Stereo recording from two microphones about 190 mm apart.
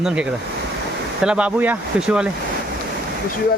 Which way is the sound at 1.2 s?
5° right (ahead or behind).